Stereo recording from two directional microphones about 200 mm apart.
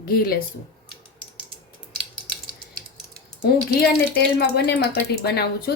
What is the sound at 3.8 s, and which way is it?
A woman's voice, 50° left (ahead or behind).